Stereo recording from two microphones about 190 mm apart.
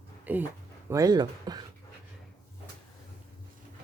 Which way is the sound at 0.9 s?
20° right (ahead or behind).